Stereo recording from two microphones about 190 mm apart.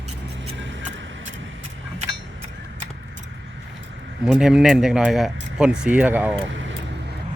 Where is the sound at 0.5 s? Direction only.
75° right (ahead or behind).